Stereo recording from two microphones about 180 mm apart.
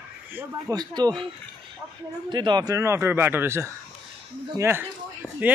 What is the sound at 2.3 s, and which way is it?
A man's voice, 25° right (ahead or behind).